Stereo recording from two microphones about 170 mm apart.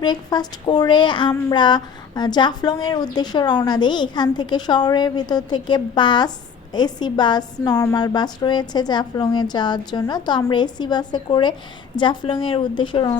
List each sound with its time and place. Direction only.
0.0 s speech: 25° left (ahead or behind)